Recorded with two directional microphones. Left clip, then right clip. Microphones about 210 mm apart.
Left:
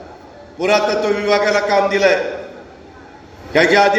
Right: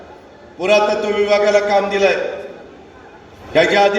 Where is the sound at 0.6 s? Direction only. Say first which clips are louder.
Right 1 dB; 30° left (ahead or behind).